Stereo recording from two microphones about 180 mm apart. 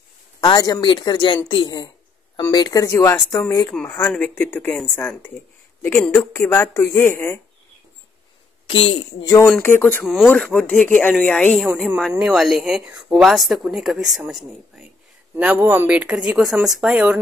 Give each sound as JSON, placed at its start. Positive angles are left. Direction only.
{"t": 0.4, "sound": "speech", "side_deg": 20}
{"t": 4.1, "sound": "speech", "side_deg": 10}
{"t": 8.6, "sound": "speech", "side_deg": 30}
{"t": 9.2, "sound": "speech", "side_deg": 20}
{"t": 11.6, "sound": "speech", "side_deg": -5}